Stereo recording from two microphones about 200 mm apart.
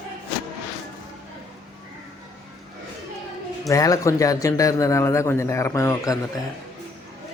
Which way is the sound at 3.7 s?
15° left (ahead or behind).